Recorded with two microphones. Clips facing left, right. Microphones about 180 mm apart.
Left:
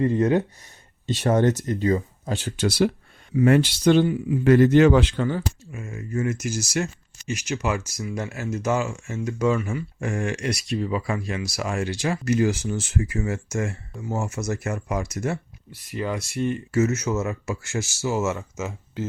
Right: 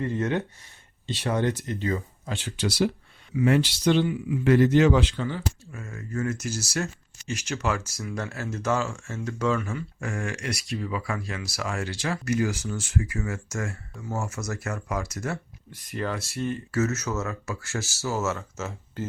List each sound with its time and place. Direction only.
0.0 s speech: 35° left (ahead or behind)
1.0 s speech: 45° left (ahead or behind)
5.7 s speech: 15° left (ahead or behind)
15.7 s speech: 10° left (ahead or behind)